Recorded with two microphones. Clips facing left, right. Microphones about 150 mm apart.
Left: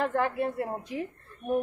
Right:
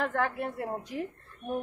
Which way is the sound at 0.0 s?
Centre (ahead or behind).